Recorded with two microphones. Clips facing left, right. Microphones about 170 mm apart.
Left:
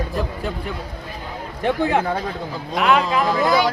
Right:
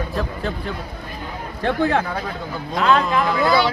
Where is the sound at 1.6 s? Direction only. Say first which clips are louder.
Even; 15° left (ahead or behind).